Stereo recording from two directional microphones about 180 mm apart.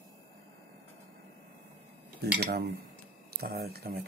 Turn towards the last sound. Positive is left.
turn(degrees=-60)  # may be behind; listen again after turning